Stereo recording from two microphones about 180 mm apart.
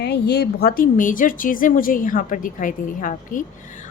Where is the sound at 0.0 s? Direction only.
65° left (ahead or behind).